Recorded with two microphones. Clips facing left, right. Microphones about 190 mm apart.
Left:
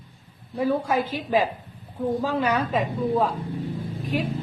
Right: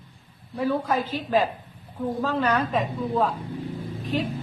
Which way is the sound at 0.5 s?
15° left (ahead or behind).